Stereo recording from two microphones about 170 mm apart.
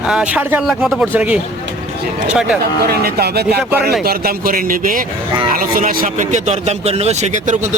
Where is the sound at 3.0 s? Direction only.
70° right (ahead or behind).